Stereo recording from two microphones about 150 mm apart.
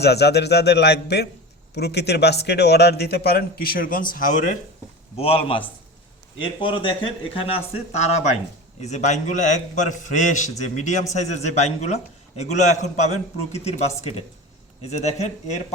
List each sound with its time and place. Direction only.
0.0 s a man's voice: 90° left; by 4.0 s 75° left (ahead or behind)
4.1 s speech: 60° left (ahead or behind)
5.1 s a man's voice: 40° left (ahead or behind)